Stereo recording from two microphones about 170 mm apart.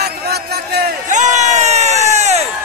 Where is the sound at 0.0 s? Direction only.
70° right (ahead or behind).